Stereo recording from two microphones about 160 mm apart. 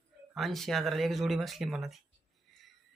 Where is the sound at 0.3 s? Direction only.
Centre (ahead or behind).